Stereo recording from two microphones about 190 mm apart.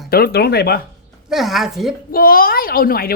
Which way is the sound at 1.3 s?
Centre (ahead or behind).